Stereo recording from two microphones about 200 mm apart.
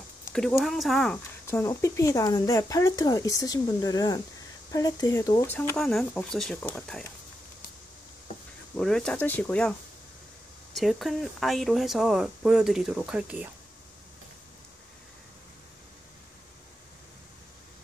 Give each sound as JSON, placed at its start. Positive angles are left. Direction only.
{"t": 0.3, "sound": "speech", "side_deg": 0}
{"t": 8.7, "sound": "speech", "side_deg": 5}